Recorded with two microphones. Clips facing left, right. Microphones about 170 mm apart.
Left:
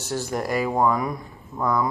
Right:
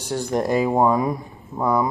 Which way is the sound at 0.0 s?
15° right (ahead or behind).